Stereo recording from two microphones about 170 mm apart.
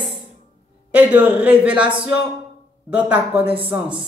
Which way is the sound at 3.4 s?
30° right (ahead or behind).